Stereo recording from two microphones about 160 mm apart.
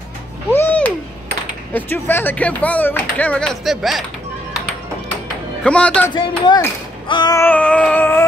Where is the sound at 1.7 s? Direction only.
15° left (ahead or behind).